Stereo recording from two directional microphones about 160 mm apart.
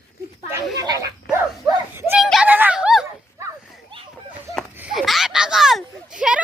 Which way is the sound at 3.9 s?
30° right (ahead or behind).